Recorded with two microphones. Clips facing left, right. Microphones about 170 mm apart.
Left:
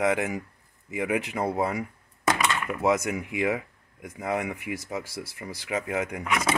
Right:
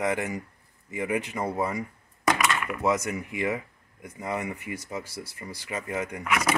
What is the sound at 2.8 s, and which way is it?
Speech, 10° left (ahead or behind).